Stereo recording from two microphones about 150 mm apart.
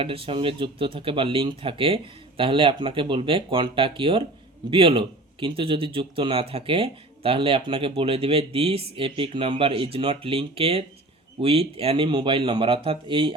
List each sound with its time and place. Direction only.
0.0 s speech: 35° right (ahead or behind)